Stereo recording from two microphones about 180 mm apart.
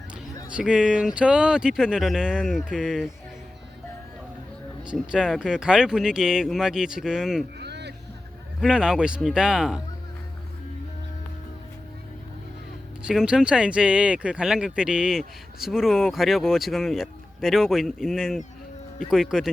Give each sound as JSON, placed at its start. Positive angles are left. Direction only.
{"t": 0.5, "sound": "speech", "side_deg": -5}
{"t": 4.9, "sound": "speech", "side_deg": -5}
{"t": 7.6, "sound": "music", "side_deg": -70}
{"t": 8.6, "sound": "speech", "side_deg": -5}
{"t": 13.0, "sound": "speech", "side_deg": -5}